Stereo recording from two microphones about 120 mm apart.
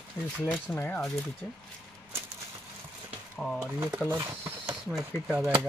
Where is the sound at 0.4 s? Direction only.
15° left (ahead or behind).